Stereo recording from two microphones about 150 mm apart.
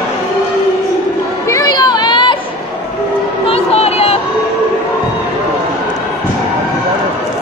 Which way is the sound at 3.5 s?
45° left (ahead or behind).